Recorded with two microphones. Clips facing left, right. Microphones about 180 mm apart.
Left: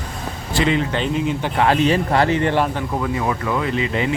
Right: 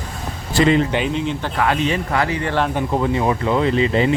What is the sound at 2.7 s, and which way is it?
Speech, 25° right (ahead or behind).